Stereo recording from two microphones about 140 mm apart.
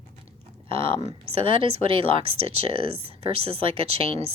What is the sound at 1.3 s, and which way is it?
Speech, 40° right (ahead or behind).